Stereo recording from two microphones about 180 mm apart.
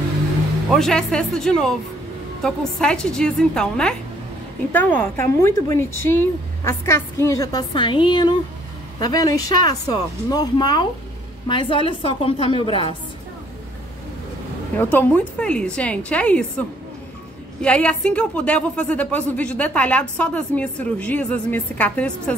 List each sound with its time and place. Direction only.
0.7 s a woman's voice: centre (ahead or behind); by 12.8 s 30° left (ahead or behind)
14.8 s a woman's voice: 10° left (ahead or behind)